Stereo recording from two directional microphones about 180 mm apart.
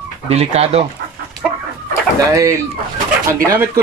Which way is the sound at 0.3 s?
35° right (ahead or behind).